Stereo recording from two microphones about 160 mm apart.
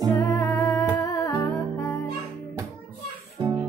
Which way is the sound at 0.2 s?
20° left (ahead or behind).